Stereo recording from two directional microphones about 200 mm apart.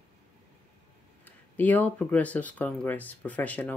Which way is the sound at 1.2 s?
10° left (ahead or behind).